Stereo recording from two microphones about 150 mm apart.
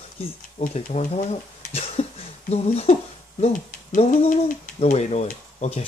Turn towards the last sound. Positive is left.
turn(degrees=45)  # may be behind; listen again after turning